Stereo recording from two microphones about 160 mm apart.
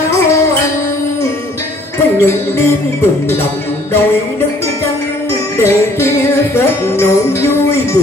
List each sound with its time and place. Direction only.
2.1 s music: 15° left (ahead or behind)
5.6 s music: 15° left (ahead or behind)